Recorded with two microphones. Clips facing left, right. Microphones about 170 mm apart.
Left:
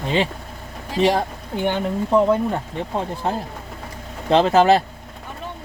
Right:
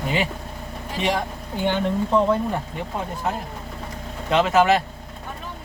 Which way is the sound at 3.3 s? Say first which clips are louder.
Left 2 dB; 30° left (ahead or behind).